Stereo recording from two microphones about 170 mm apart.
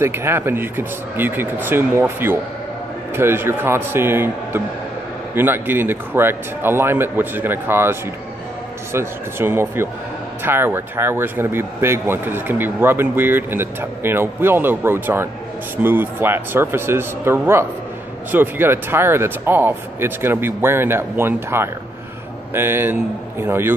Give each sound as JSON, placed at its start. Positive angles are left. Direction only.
{"t": 0.0, "sound": "speech", "side_deg": -15}